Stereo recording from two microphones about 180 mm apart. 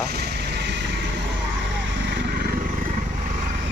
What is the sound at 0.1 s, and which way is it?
Vehicle, 65° right (ahead or behind).